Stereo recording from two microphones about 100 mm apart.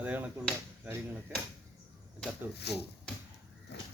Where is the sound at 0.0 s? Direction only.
15° right (ahead or behind).